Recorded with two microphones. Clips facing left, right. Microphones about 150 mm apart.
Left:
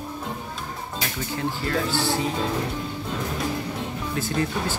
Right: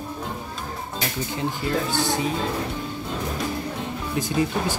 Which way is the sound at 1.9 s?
15° right (ahead or behind).